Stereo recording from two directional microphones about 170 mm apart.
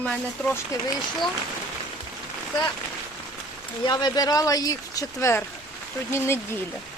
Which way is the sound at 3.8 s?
25° left (ahead or behind).